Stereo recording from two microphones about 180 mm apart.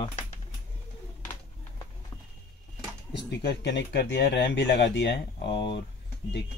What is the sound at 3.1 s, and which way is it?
Speech, 65° left (ahead or behind).